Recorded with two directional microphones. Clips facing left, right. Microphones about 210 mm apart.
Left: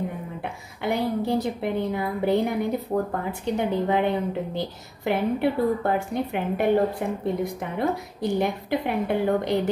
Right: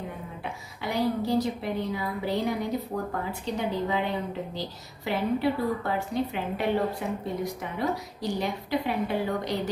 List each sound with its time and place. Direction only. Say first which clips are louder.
0.4 s a woman's voice: left 4 dB; 55° left (ahead or behind)